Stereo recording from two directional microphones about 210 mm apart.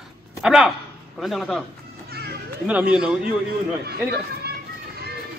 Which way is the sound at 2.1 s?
50° right (ahead or behind).